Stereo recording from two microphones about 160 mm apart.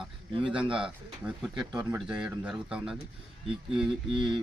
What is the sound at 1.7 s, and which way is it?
Speech, 25° right (ahead or behind).